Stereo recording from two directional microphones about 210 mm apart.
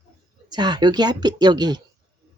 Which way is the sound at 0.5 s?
20° right (ahead or behind).